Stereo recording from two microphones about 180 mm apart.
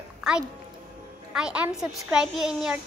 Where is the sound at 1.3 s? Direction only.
5° right (ahead or behind).